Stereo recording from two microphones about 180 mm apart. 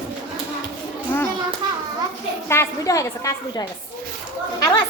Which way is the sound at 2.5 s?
15° left (ahead or behind).